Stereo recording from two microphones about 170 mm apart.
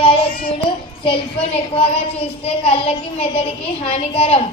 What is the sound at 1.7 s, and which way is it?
A woman's voice, 35° left (ahead or behind).